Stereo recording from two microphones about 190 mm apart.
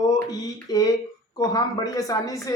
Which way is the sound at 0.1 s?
20° left (ahead or behind).